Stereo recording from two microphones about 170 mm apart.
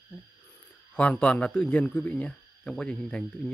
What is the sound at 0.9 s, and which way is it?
Speech, 10° left (ahead or behind).